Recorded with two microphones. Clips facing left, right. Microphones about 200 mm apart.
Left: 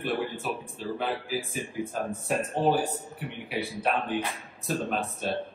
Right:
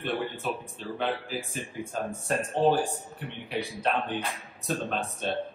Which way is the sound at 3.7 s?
5° left (ahead or behind).